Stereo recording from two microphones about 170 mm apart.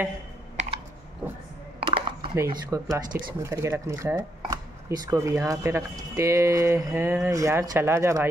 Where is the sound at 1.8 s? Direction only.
30° right (ahead or behind).